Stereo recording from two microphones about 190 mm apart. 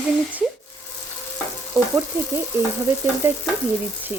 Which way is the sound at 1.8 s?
15° left (ahead or behind).